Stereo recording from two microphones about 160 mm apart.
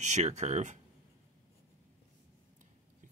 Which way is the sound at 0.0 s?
45° right (ahead or behind).